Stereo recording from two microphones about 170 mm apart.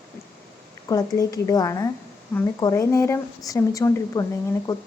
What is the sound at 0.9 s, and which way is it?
A woman's voice, 20° left (ahead or behind).